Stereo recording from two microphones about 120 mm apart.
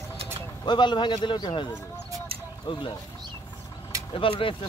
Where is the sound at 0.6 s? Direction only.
40° left (ahead or behind).